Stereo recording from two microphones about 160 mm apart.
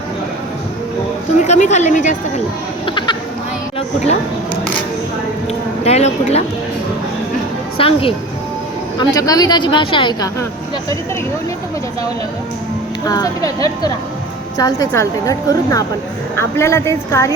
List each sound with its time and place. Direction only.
1.5 s a woman's voice: 45° left (ahead or behind)
2.8 s a sound: 30° left (ahead or behind)
3.8 s a woman's voice: 45° left (ahead or behind)
5.8 s a woman's voice: 40° left (ahead or behind)
7.8 s a woman's voice: 35° left (ahead or behind)
9.0 s a woman's voice: 25° left (ahead or behind)
13.1 s a woman's voice: 25° left (ahead or behind)